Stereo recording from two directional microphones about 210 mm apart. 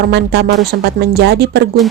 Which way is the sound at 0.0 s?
50° right (ahead or behind).